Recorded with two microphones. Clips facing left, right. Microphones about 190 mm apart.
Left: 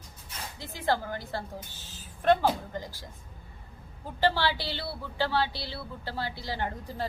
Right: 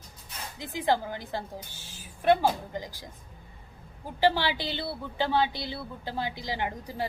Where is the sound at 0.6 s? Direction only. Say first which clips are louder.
Right 2 dB; 15° right (ahead or behind).